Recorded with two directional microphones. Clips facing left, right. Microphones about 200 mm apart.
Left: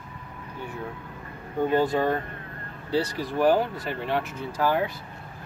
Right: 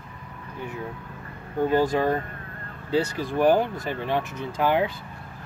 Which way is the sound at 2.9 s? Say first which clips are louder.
Right 2 dB; 15° right (ahead or behind).